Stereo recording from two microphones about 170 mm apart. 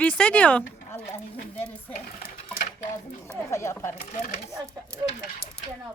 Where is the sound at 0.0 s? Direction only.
5° left (ahead or behind).